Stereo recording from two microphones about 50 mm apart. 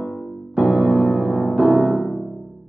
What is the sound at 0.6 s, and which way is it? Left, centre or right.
Music, right.